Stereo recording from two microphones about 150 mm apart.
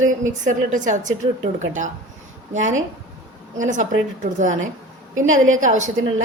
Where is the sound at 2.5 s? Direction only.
55° right (ahead or behind).